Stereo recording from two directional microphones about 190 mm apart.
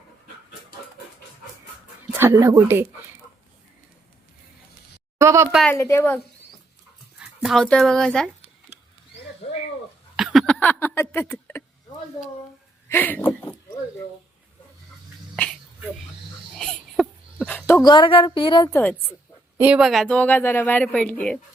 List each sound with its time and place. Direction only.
2.1 s speech: 15° right (ahead or behind)
5.1 s speech: 15° right (ahead or behind)
5.7 s speech: 15° left (ahead or behind)
7.2 s speech: centre (ahead or behind)
10.2 s hiccup: centre (ahead or behind)
12.9 s a sound: 10° left (ahead or behind)
16.6 s a sound: centre (ahead or behind)
17.8 s a woman's voice: 25° left (ahead or behind)
18.7 s speech: 10° left (ahead or behind)
19.5 s speech: 5° right (ahead or behind)